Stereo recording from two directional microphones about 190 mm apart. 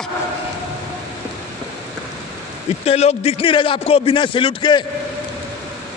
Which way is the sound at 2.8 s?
30° left (ahead or behind).